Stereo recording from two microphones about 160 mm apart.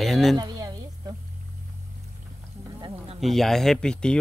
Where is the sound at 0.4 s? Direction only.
25° right (ahead or behind).